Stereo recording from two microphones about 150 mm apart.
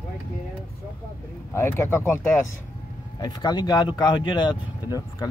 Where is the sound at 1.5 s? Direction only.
15° left (ahead or behind).